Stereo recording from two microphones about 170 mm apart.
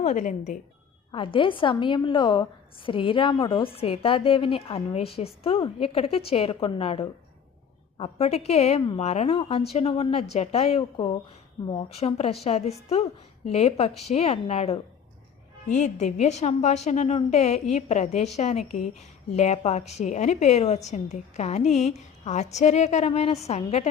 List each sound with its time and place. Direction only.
0.0 s speech: 45° left (ahead or behind)
1.1 s a woman's voice: 30° left (ahead or behind)